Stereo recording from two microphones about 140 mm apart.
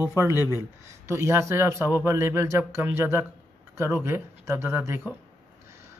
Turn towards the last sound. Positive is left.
turn(degrees=-20)  # may be behind; listen again after turning